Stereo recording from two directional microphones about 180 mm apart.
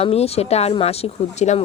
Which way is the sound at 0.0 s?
35° left (ahead or behind).